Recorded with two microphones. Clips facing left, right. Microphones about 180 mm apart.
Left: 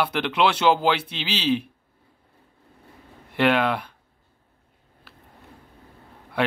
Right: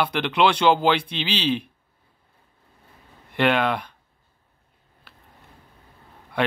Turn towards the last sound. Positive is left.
turn(degrees=5)  # may be behind; listen again after turning